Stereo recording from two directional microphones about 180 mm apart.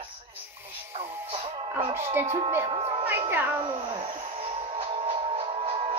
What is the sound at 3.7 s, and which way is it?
Music, 30° right (ahead or behind).